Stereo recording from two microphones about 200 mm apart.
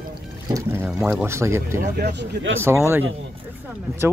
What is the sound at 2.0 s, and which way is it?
Speech, 55° right (ahead or behind).